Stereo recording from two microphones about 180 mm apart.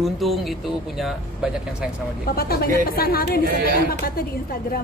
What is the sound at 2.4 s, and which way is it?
A woman's voice, 55° left (ahead or behind).